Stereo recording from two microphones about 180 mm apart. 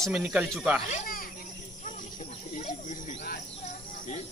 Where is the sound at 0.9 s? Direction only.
50° left (ahead or behind).